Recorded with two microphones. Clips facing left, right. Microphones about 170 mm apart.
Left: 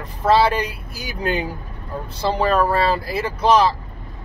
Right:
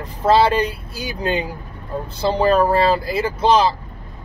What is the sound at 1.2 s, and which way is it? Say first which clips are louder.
Speech: even; 25° right (ahead or behind).